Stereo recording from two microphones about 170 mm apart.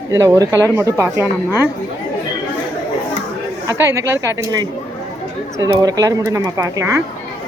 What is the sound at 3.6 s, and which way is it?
Speech, 15° right (ahead or behind).